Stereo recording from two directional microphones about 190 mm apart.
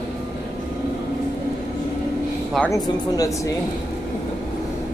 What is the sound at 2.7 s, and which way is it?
Speech, 20° left (ahead or behind).